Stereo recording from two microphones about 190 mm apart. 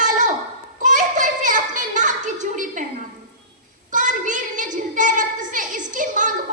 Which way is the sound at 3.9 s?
40° right (ahead or behind).